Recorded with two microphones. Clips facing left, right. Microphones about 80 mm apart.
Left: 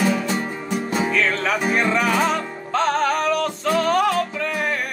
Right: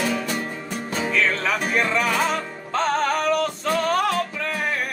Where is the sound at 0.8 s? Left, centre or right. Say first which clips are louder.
Left 3 dB; centre.